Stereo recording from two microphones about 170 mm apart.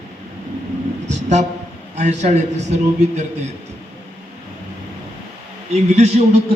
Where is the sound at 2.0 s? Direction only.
40° right (ahead or behind).